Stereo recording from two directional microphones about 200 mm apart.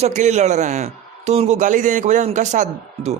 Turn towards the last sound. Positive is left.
turn(degrees=-35)  # may be behind; listen again after turning